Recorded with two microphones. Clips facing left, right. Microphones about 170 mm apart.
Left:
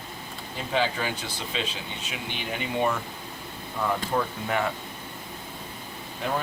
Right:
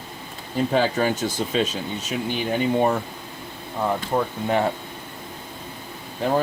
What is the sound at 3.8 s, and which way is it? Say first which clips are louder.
Speech: right 4 dB; 25° right (ahead or behind).